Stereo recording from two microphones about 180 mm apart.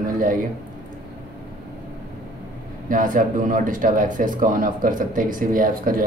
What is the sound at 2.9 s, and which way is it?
A man's voice, 50° right (ahead or behind).